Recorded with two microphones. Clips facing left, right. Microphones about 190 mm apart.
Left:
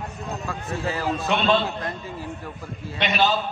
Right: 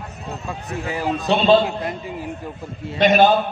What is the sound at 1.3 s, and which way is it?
Speech, 35° right (ahead or behind).